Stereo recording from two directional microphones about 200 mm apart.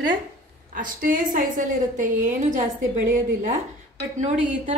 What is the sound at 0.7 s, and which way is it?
A woman's voice, 45° right (ahead or behind).